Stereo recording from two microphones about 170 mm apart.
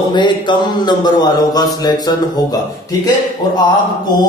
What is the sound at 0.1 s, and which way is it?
Mantra, 25° left (ahead or behind).